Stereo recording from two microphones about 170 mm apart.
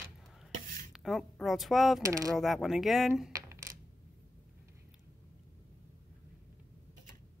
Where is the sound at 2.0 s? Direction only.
20° right (ahead or behind).